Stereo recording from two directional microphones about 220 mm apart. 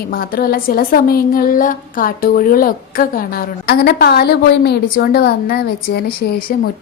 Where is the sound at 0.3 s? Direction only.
45° left (ahead or behind).